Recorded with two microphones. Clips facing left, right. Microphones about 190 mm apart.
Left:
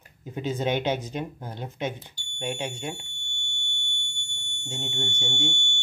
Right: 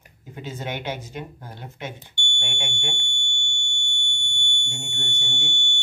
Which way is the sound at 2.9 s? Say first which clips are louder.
Right 6 dB; 35° left (ahead or behind).